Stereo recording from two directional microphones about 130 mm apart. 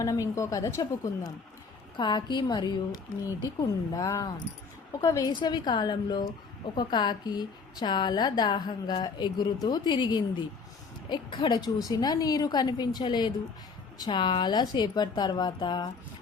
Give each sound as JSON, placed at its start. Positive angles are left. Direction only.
{"t": 0.0, "sound": "a woman's voice", "side_deg": 25}
{"t": 5.3, "sound": "a woman's voice", "side_deg": 35}